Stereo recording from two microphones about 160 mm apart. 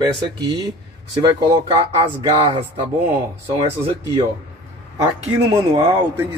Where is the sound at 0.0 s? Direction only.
25° right (ahead or behind).